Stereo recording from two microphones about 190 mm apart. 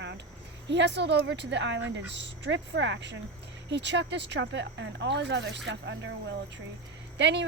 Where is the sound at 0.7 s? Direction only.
65° right (ahead or behind).